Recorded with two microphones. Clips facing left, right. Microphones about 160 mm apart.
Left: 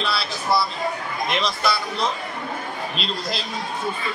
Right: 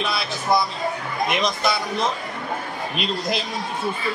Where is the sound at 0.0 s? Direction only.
20° right (ahead or behind).